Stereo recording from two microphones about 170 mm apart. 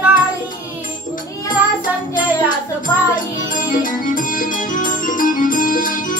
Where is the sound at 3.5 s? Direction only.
50° left (ahead or behind).